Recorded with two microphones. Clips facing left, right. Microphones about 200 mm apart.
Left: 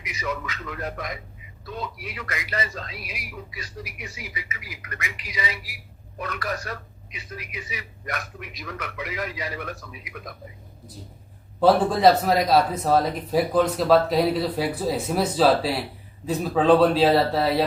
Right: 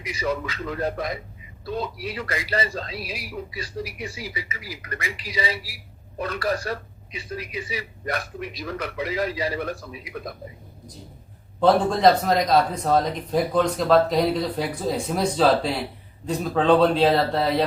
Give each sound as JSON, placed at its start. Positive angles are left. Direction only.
{"t": 0.0, "sound": "speech", "side_deg": -30}
{"t": 11.6, "sound": "speech", "side_deg": 5}